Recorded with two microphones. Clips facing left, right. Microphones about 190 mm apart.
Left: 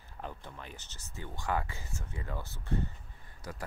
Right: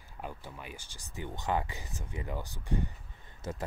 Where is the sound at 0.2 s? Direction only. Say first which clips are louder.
Right 1 dB; 10° right (ahead or behind).